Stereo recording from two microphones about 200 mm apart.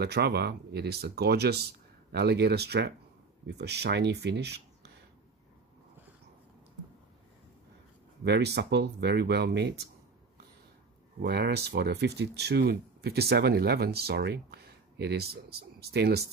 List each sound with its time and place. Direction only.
0.0 s speech: 55° right (ahead or behind)
8.2 s speech: 55° right (ahead or behind)
11.1 s speech: 55° right (ahead or behind)